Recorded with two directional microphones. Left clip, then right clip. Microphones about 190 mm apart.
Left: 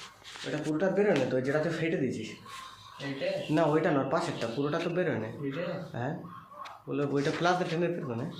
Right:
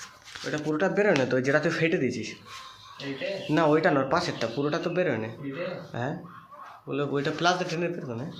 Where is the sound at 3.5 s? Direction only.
30° right (ahead or behind); by 7.9 s 10° right (ahead or behind).